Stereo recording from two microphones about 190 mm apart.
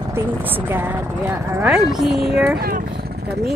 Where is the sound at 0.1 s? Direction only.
10° right (ahead or behind).